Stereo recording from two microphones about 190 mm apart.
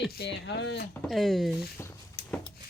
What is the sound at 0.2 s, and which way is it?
Speech, 65° left (ahead or behind).